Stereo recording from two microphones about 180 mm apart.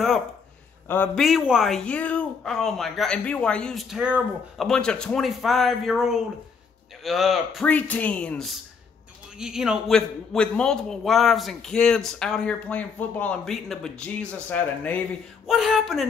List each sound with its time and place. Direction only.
0.8 s a man's voice: 10° left (ahead or behind)
15.4 s a man's voice: centre (ahead or behind)